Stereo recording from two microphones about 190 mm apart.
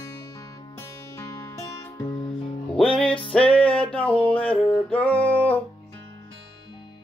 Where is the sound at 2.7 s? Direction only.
5° left (ahead or behind).